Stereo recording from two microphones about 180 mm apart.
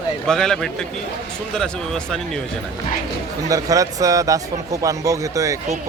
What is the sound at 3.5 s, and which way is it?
A man's voice, 20° right (ahead or behind).